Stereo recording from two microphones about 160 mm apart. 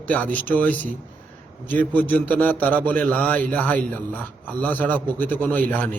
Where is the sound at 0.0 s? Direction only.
10° left (ahead or behind).